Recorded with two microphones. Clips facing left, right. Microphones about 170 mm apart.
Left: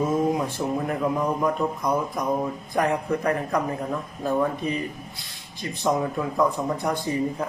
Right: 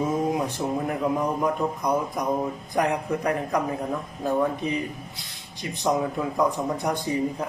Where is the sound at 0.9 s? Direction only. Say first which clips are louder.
Even; 20° right (ahead or behind).